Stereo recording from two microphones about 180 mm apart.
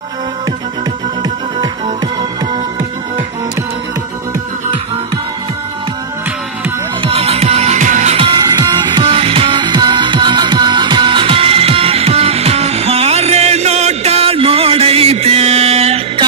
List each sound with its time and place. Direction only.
7.0 s music: 35° right (ahead or behind)
8.5 s music: 25° right (ahead or behind)